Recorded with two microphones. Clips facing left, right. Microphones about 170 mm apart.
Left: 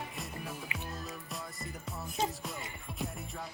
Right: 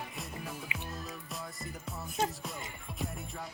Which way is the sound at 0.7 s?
20° right (ahead or behind).